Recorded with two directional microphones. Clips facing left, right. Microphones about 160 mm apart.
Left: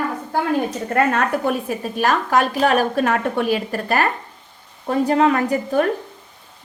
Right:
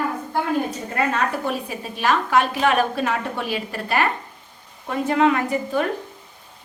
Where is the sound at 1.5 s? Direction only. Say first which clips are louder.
Left 5 dB; 50° left (ahead or behind).